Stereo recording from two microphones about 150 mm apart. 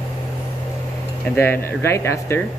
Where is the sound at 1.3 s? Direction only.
15° left (ahead or behind).